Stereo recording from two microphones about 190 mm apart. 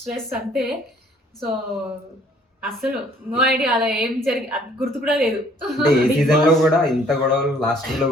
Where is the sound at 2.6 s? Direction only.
Centre (ahead or behind).